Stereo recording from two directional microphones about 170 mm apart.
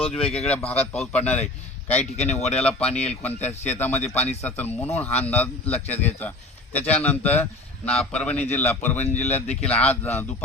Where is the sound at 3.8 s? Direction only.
10° left (ahead or behind).